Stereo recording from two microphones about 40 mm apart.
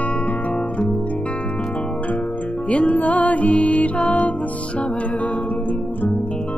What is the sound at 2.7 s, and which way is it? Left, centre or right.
Music, left.